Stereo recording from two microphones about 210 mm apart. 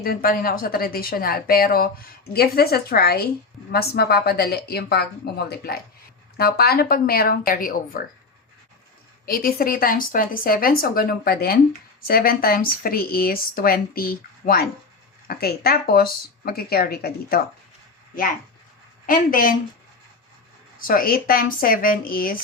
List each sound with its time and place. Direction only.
0.0 s speech: 45° left (ahead or behind)
9.2 s speech: 45° left (ahead or behind)
19.0 s speech: 40° left (ahead or behind)
20.7 s speech: 45° left (ahead or behind)